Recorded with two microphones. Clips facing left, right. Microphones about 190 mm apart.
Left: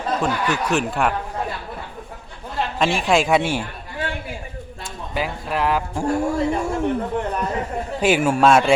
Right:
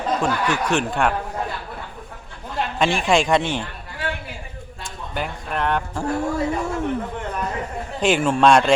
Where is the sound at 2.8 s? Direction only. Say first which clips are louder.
Even; centre (ahead or behind).